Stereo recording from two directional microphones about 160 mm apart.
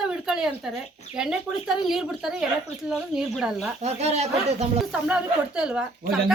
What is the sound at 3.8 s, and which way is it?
Speech, 40° right (ahead or behind).